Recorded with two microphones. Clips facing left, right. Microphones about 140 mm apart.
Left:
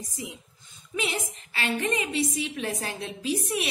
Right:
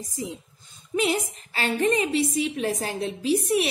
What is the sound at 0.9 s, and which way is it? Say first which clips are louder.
A woman's voice: right 7 dB; 35° right (ahead or behind).